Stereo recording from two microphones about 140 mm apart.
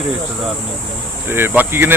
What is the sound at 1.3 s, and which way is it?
Speech, 15° right (ahead or behind).